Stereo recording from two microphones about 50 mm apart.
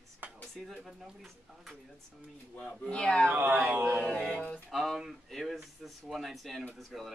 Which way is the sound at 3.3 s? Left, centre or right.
Right.